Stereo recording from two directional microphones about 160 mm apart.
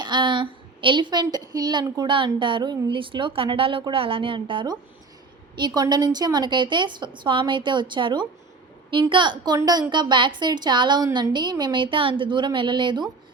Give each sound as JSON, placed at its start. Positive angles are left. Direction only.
{"t": 0.0, "sound": "a woman's voice", "side_deg": -30}